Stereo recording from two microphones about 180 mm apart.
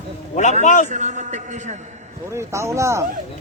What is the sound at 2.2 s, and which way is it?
Speech, 15° right (ahead or behind).